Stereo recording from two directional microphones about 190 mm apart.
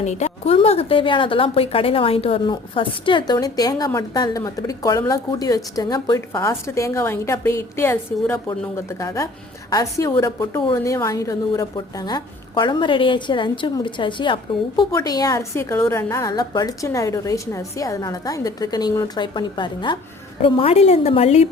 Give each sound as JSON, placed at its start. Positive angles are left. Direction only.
{"t": 0.0, "sound": "a woman's voice", "side_deg": 40}